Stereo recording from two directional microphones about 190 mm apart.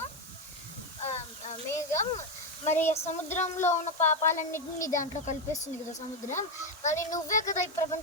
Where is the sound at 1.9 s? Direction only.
40° left (ahead or behind).